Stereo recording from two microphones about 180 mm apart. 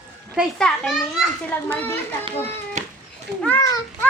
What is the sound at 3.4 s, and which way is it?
Speech, 15° left (ahead or behind).